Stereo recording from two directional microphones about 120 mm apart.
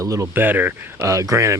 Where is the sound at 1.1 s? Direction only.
25° right (ahead or behind).